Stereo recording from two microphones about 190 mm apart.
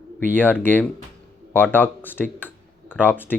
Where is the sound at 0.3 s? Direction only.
10° left (ahead or behind).